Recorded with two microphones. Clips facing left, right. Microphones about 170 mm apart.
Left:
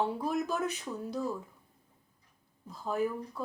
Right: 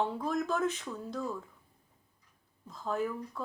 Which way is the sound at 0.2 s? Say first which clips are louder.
Right 1 dB; 15° left (ahead or behind).